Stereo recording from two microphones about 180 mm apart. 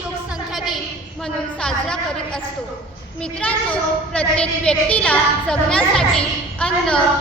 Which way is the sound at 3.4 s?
10° left (ahead or behind).